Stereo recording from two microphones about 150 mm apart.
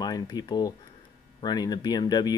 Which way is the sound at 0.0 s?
25° left (ahead or behind).